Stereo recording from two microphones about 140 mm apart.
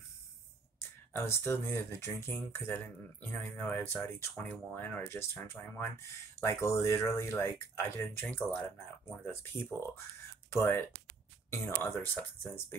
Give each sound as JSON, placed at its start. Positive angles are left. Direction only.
{"t": 0.7, "sound": "speech", "side_deg": 20}
{"t": 12.0, "sound": "speech", "side_deg": 15}